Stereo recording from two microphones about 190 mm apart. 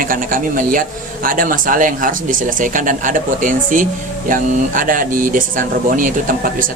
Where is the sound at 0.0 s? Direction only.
45° right (ahead or behind).